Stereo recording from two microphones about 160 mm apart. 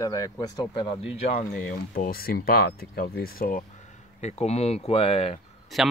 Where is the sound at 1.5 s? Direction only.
60° left (ahead or behind).